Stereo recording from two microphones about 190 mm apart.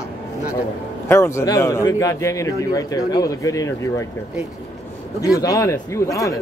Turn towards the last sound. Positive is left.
turn(degrees=15)  # may be behind; listen again after turning